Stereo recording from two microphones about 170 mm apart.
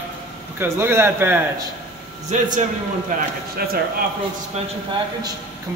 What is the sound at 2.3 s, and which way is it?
Speech, 45° right (ahead or behind).